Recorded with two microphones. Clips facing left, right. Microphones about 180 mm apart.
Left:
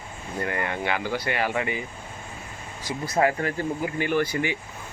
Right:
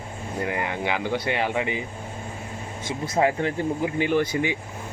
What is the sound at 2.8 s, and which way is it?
Speech, 25° right (ahead or behind).